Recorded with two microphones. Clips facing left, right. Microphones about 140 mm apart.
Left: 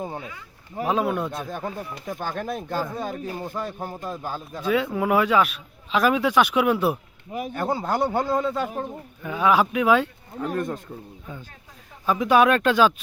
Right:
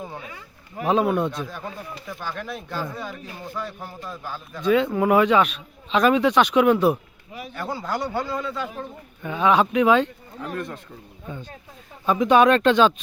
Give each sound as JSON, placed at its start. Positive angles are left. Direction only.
{"t": 0.0, "sound": "speech", "side_deg": 25}
{"t": 0.9, "sound": "speech", "side_deg": 0}
{"t": 1.4, "sound": "a man's voice", "side_deg": 50}
{"t": 4.5, "sound": "speech", "side_deg": 5}
{"t": 7.3, "sound": "a man's voice", "side_deg": 50}
{"t": 9.2, "sound": "speech", "side_deg": 5}
{"t": 10.5, "sound": "speech", "side_deg": 40}
{"t": 12.2, "sound": "speech", "side_deg": 5}